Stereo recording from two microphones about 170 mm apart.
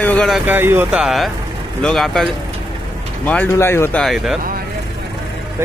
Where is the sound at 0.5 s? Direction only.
15° right (ahead or behind).